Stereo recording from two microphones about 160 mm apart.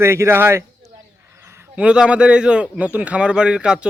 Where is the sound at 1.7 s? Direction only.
5° right (ahead or behind).